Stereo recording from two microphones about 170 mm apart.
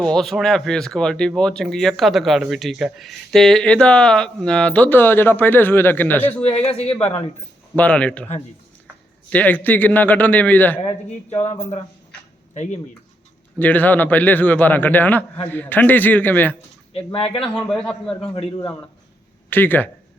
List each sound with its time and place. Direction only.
0.0 s speech: centre (ahead or behind)
6.4 s speech: 35° left (ahead or behind)
7.8 s a man's voice: 5° left (ahead or behind)
9.3 s a man's voice: 10° left (ahead or behind)
13.6 s a man's voice: 10° left (ahead or behind)
16.9 s speech: 35° left (ahead or behind)
17.6 s speech: centre (ahead or behind)
19.5 s a man's voice: 10° left (ahead or behind)